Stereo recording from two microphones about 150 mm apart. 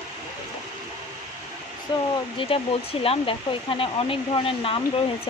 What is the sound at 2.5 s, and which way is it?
Speech, 40° left (ahead or behind).